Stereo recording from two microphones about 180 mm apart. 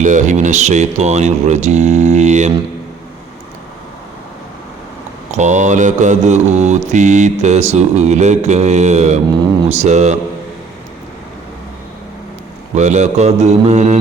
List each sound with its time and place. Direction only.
0.0 s mantra: 45° right (ahead or behind)
5.3 s mantra: 40° right (ahead or behind)
12.7 s mantra: 40° right (ahead or behind)